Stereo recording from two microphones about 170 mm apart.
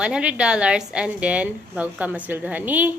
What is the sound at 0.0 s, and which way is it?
A woman's voice, 5° right (ahead or behind).